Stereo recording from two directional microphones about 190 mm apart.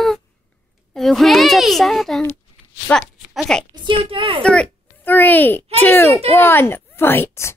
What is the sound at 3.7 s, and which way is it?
Speech, 25° right (ahead or behind).